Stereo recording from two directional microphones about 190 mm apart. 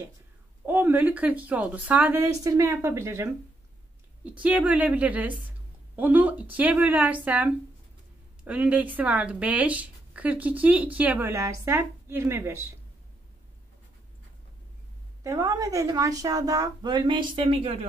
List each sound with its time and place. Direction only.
0.7 s speech: 10° right (ahead or behind)
15.2 s speech: 20° right (ahead or behind)